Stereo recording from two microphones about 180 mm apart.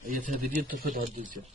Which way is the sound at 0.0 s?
50° right (ahead or behind).